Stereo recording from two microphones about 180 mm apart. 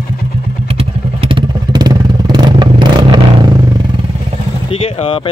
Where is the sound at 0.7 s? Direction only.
30° right (ahead or behind).